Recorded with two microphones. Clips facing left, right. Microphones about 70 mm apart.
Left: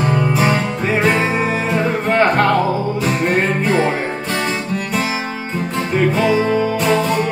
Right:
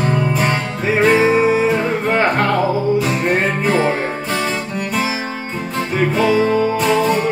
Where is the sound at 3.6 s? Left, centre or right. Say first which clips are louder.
Even; centre.